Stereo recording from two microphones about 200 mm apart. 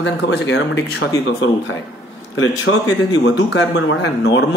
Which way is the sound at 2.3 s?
90° left.